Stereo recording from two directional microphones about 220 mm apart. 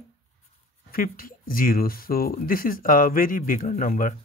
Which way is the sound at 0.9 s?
40° left (ahead or behind).